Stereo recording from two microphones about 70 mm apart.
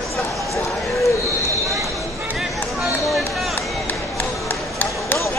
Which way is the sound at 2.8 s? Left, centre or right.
Centre.